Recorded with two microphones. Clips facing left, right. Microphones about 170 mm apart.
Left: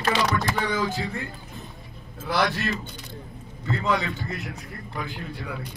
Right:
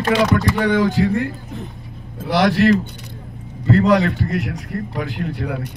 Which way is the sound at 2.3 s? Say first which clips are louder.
Right 11 dB; 75° right (ahead or behind).